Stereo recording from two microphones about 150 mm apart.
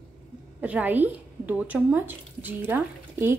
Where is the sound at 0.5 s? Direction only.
10° right (ahead or behind).